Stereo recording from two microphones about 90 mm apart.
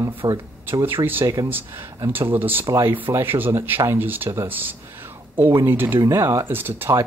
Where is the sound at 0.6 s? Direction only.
20° right (ahead or behind).